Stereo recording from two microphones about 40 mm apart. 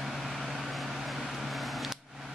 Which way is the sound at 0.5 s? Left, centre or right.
Centre.